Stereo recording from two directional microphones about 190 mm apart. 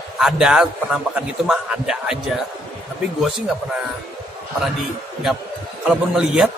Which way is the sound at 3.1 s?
Centre (ahead or behind).